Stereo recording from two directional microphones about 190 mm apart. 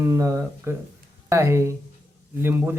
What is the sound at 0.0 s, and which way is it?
A man's voice, 15° right (ahead or behind).